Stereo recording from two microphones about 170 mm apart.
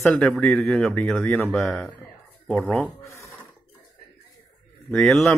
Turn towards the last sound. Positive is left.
turn(degrees=0)  # may be behind; listen again after turning